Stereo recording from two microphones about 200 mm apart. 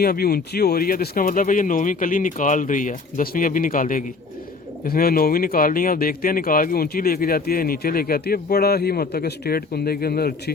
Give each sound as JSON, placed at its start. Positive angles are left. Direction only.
{"t": 0.0, "sound": "speech", "side_deg": 50}